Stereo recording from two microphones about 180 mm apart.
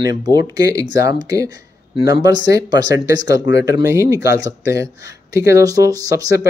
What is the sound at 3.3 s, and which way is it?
Speech, 80° left.